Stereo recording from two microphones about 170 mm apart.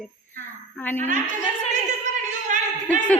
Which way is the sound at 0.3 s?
10° left (ahead or behind).